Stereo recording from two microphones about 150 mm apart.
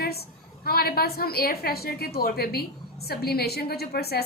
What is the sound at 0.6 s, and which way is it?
A woman's voice, 90° left.